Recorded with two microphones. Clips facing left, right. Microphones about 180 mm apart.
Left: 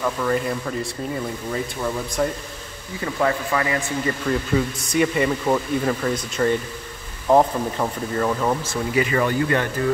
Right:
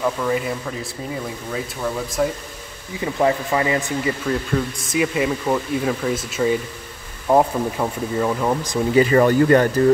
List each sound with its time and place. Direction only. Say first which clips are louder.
0.0 s speech: right 1 dB; 5° right (ahead or behind)
3.0 s speech: right 3 dB; 20° right (ahead or behind)
4.0 s speech: right 1 dB; centre (ahead or behind)
8.9 s speech: right 6 dB; 35° right (ahead or behind)